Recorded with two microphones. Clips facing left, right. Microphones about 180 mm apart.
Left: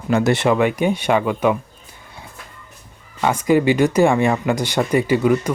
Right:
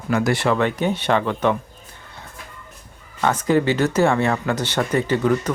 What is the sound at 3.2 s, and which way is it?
Speech, 10° left (ahead or behind).